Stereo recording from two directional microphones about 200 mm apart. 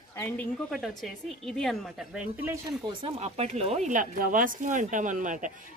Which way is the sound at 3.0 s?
30° right (ahead or behind).